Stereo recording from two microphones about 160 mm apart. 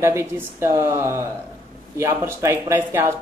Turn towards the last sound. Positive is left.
turn(degrees=-15)  # may be behind; listen again after turning